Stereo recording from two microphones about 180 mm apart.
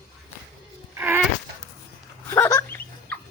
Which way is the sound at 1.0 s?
10° right (ahead or behind).